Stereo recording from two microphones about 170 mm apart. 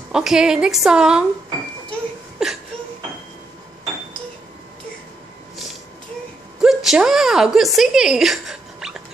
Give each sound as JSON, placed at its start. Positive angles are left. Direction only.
{"t": 0.1, "sound": "a woman's voice", "side_deg": -5}
{"t": 1.9, "sound": "a sound", "side_deg": -5}
{"t": 6.6, "sound": "a woman's voice", "side_deg": 0}